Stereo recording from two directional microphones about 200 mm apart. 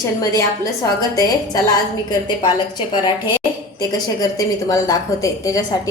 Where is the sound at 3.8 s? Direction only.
20° left (ahead or behind).